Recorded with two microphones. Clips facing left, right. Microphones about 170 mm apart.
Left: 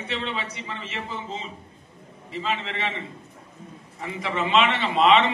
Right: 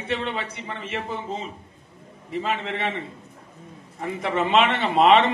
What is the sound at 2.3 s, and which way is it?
Speech, 50° right (ahead or behind).